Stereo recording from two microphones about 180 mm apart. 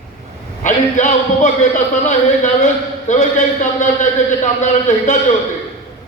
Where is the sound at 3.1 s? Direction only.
45° left (ahead or behind).